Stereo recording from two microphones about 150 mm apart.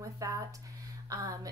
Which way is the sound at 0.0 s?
20° right (ahead or behind).